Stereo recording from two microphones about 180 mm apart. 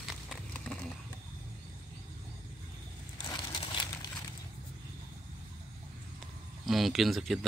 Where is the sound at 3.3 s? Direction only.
25° left (ahead or behind).